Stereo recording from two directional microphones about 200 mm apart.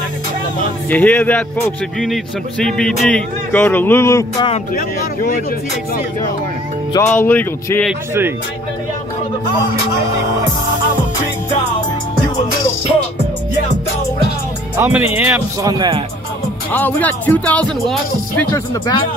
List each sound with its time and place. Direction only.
0.8 s speech: 10° left (ahead or behind)
2.6 s speech: 5° left (ahead or behind)
4.7 s speech: 45° left (ahead or behind)
7.1 s speech: 10° left (ahead or behind)
14.8 s speech: 10° right (ahead or behind)
15.7 s speech: 20° right (ahead or behind)
16.7 s speech: 10° left (ahead or behind)